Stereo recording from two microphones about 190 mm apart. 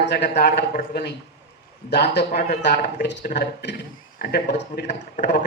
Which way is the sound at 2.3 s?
35° left (ahead or behind).